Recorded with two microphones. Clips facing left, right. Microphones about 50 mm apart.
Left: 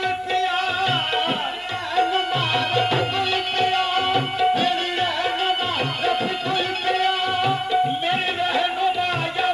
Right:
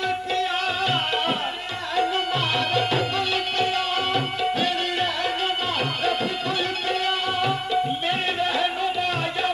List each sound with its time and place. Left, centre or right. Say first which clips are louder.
2.0 s music: left 2 dB; centre
6.9 s music: left 5 dB; centre